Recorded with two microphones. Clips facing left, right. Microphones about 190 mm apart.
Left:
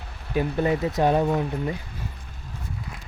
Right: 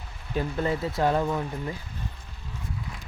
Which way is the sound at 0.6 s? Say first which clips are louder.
Left 3 dB; 20° left (ahead or behind).